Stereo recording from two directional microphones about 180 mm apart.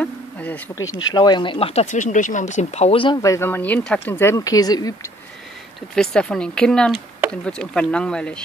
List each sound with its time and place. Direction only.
0.0 s insect: 10° left (ahead or behind)
0.8 s speech: 90° left
1.1 s speech: 25° left (ahead or behind)
5.9 s speech: 5° left (ahead or behind)